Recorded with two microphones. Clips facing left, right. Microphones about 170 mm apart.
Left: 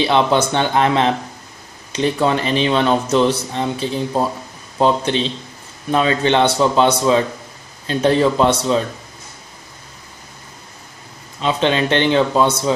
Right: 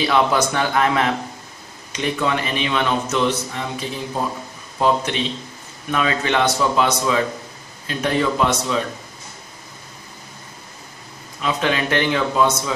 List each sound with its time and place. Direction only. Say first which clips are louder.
0.0 s speech: left 3 dB; 25° left (ahead or behind)
11.4 s speech: left 4 dB; 25° left (ahead or behind)